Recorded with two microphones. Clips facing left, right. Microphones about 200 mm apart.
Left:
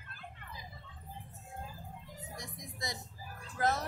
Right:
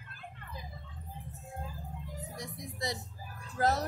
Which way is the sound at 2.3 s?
35° right (ahead or behind).